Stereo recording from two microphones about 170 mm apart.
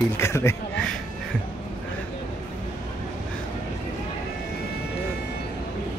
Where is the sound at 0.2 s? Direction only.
15° left (ahead or behind).